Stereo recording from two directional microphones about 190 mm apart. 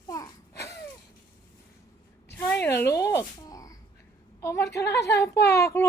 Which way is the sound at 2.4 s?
10° left (ahead or behind).